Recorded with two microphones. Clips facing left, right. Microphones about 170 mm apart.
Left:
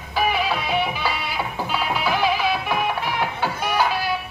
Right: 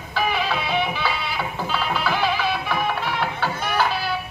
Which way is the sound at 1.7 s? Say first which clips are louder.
Left 1 dB; 10° left (ahead or behind).